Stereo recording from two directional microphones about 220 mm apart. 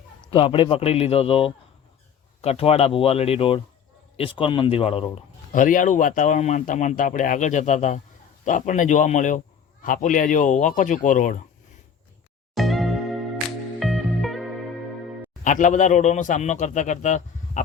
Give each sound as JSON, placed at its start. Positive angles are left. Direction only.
{"t": 0.3, "sound": "a man's voice", "side_deg": 25}
{"t": 12.5, "sound": "music", "side_deg": 0}
{"t": 15.4, "sound": "speech", "side_deg": 35}